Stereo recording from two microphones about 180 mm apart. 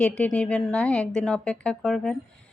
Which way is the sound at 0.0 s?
5° left (ahead or behind).